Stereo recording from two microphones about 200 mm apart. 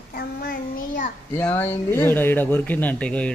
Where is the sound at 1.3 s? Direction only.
10° left (ahead or behind).